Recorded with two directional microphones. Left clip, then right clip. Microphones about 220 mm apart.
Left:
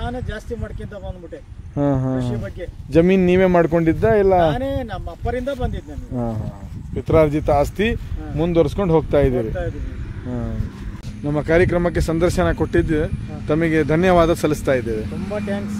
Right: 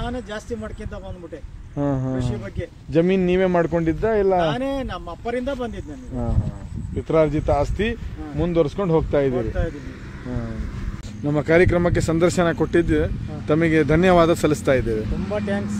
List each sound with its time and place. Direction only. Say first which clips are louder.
1.8 s speech: left 4 dB; 55° left (ahead or behind)
4.4 s speech: left 3 dB; centre (ahead or behind)
6.1 s speech: left 4 dB; 50° left (ahead or behind)
11.2 s speech: even; 10° left (ahead or behind)
15.0 s speech: even; 50° left (ahead or behind)